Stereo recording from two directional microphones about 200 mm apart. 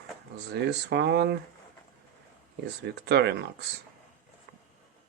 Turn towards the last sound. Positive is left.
turn(degrees=-55)  # may be behind; listen again after turning